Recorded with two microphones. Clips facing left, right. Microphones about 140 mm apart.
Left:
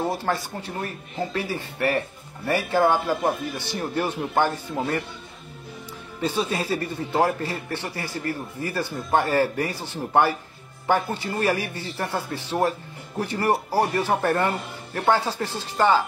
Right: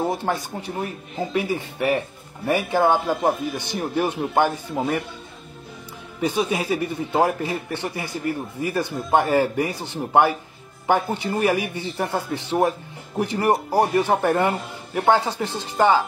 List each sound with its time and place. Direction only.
0.0 s a man's voice: 15° right (ahead or behind)
6.2 s a man's voice: 15° right (ahead or behind)